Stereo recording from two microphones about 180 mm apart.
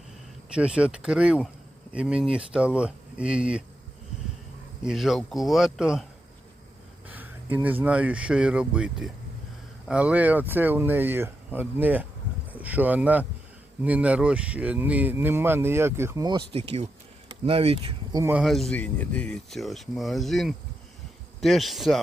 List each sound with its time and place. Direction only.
0.5 s speech: 5° right (ahead or behind)
4.8 s speech: centre (ahead or behind)
7.1 s speech: 10° right (ahead or behind)
17.4 s speech: 30° right (ahead or behind)
18.1 s speech: 15° right (ahead or behind)
18.4 s speech: centre (ahead or behind)